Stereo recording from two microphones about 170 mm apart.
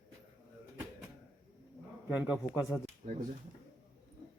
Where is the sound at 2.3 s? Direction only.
10° right (ahead or behind).